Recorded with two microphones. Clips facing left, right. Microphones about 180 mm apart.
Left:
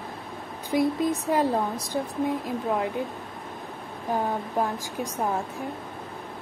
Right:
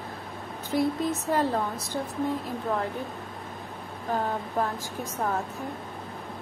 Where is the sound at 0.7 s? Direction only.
15° left (ahead or behind).